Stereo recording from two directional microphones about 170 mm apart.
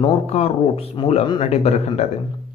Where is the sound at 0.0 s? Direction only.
35° left (ahead or behind).